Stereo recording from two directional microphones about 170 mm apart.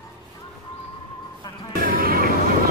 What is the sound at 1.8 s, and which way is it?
Music, 60° right (ahead or behind).